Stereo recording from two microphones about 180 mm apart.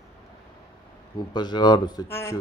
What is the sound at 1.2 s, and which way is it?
Speech, 25° left (ahead or behind).